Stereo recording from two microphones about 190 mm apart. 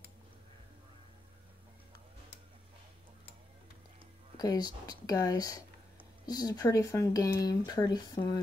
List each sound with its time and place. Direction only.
4.4 s speech: 20° left (ahead or behind)